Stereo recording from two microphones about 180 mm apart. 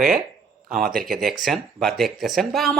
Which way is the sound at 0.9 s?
55° right (ahead or behind).